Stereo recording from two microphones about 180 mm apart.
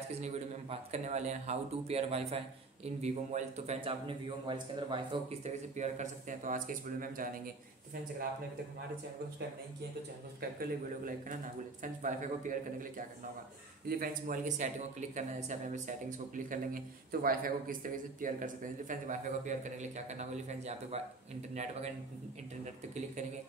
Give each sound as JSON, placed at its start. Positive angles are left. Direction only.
{"t": 0.1, "sound": "a man's voice", "side_deg": -35}
{"t": 5.4, "sound": "a man's voice", "side_deg": -40}
{"t": 10.6, "sound": "a man's voice", "side_deg": -50}